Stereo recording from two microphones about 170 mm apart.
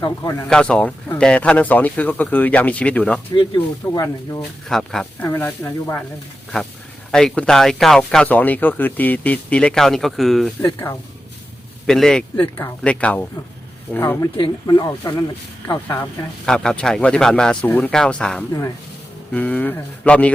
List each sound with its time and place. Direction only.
0.0 s speech: 20° left (ahead or behind)
0.4 s speech: 5° left (ahead or behind)
3.3 s speech: 20° left (ahead or behind)
4.7 s speech: centre (ahead or behind)
7.1 s speech: 5° left (ahead or behind)
10.6 s speech: 15° left (ahead or behind)
11.9 s speech: 5° left (ahead or behind)
14.3 s speech: 25° left (ahead or behind)
16.5 s speech: 5° left (ahead or behind)